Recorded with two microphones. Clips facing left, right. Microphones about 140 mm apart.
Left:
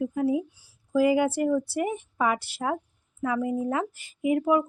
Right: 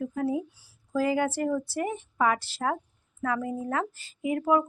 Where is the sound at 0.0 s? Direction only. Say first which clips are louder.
Left 3 dB; 15° left (ahead or behind).